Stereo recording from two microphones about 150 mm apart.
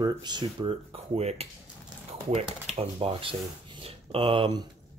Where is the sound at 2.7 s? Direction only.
40° right (ahead or behind).